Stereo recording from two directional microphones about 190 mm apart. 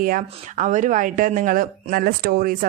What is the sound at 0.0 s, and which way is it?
A woman's voice, 45° right (ahead or behind).